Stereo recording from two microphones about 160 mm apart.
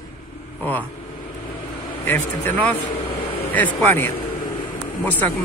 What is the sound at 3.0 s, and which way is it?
Vehicle, 35° left (ahead or behind).